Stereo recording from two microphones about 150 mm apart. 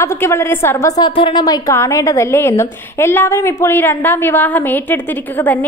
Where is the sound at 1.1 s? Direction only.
35° left (ahead or behind).